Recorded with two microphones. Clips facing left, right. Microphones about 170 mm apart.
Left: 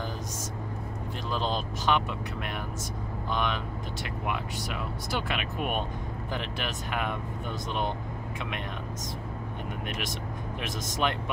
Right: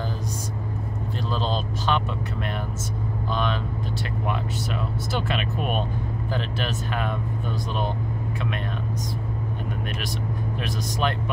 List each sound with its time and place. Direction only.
1.3 s vehicle: 15° left (ahead or behind)
5.1 s speech: 10° left (ahead or behind)
10.6 s speech: 20° left (ahead or behind)